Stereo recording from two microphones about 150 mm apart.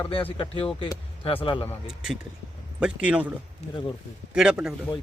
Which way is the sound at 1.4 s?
35° left (ahead or behind).